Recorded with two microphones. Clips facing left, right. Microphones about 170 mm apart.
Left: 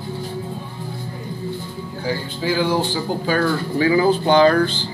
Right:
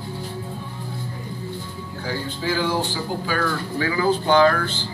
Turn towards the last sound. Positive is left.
turn(degrees=20)  # may be behind; listen again after turning